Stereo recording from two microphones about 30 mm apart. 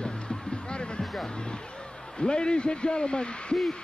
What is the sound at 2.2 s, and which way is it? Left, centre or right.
A man's voice, left.